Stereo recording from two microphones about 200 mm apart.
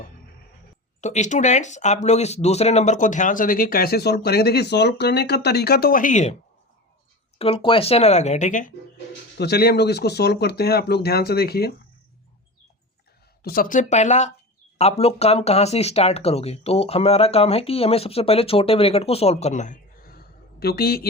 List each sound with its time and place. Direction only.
1.0 s speech: 35° left (ahead or behind)
7.3 s speech: 30° left (ahead or behind)
9.4 s speech: 55° left (ahead or behind)
13.4 s speech: 45° left (ahead or behind)